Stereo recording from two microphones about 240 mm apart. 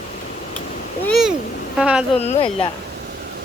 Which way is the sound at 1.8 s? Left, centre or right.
Centre.